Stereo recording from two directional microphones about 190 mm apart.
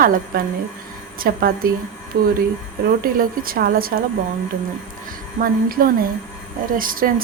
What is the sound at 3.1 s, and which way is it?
Speech, 50° right (ahead or behind).